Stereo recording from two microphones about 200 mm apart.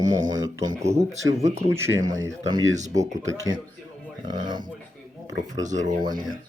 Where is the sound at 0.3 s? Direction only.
20° right (ahead or behind).